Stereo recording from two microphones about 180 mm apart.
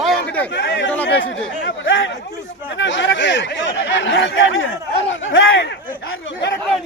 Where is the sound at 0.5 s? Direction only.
70° left (ahead or behind).